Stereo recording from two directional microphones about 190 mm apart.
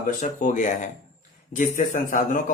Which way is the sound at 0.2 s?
40° left (ahead or behind).